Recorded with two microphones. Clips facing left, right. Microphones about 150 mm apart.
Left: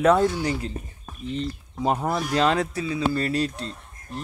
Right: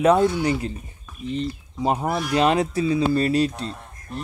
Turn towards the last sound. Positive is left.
turn(degrees=-20)  # may be behind; listen again after turning